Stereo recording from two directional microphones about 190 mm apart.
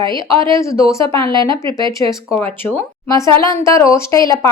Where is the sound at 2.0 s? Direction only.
15° left (ahead or behind).